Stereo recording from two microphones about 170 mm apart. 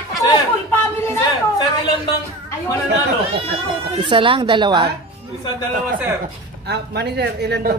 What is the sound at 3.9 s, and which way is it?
Speech, 30° right (ahead or behind).